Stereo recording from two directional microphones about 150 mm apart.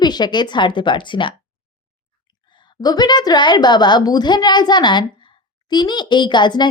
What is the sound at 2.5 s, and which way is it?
A woman's voice, 30° left (ahead or behind).